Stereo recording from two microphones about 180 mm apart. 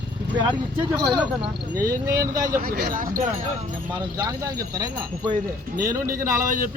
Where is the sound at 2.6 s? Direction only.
60° right (ahead or behind).